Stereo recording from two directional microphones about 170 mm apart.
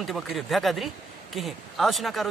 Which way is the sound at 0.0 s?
Centre (ahead or behind).